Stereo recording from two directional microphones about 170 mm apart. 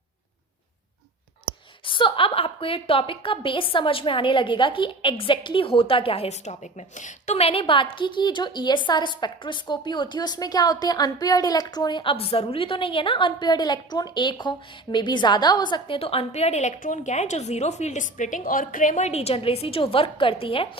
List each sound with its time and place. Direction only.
1.8 s a woman's voice: 30° left (ahead or behind)